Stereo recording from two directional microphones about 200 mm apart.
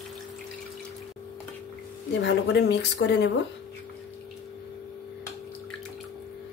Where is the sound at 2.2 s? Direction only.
60° left (ahead or behind).